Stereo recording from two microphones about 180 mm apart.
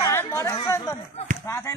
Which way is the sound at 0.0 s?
15° left (ahead or behind).